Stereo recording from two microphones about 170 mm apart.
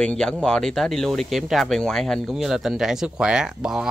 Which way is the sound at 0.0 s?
5° left (ahead or behind).